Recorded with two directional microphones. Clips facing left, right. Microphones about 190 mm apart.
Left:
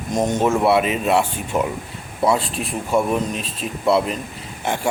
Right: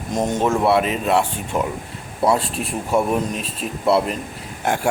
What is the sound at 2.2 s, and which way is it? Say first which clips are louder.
Speech: even; 5° right (ahead or behind).